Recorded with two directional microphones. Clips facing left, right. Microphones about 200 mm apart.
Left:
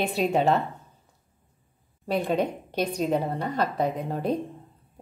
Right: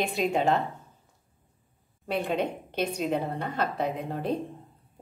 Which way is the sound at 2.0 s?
40° left (ahead or behind).